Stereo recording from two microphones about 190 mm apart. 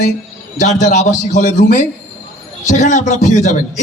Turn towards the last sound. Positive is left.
turn(degrees=40)  # may be behind; listen again after turning